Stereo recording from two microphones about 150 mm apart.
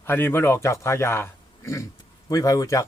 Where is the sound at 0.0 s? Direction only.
15° left (ahead or behind).